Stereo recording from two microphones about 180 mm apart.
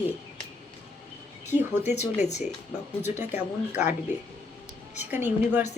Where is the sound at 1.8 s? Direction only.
40° left (ahead or behind).